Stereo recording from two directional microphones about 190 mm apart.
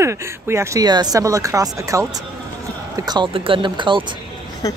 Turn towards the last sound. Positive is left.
turn(degrees=20)  # may be behind; listen again after turning